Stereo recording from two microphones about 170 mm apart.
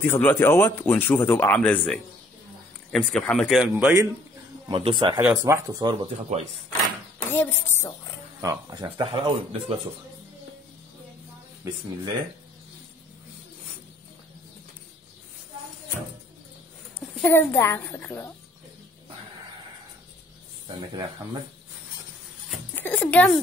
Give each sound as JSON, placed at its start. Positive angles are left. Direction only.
{"t": 0.0, "sound": "speech", "side_deg": 15}
{"t": 4.6, "sound": "speech", "side_deg": -30}
{"t": 7.3, "sound": "speech", "side_deg": 15}
{"t": 8.4, "sound": "speech", "side_deg": -20}
{"t": 17.2, "sound": "speech", "side_deg": 15}
{"t": 20.6, "sound": "speech", "side_deg": -25}
{"t": 22.8, "sound": "speech", "side_deg": 10}